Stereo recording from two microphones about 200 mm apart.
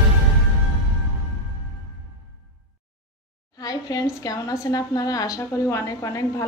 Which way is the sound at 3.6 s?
20° left (ahead or behind).